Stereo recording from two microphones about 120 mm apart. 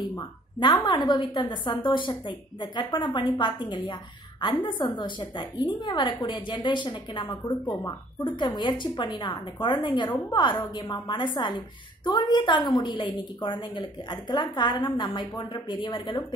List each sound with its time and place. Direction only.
0.6 s a woman's voice: 40° left (ahead or behind)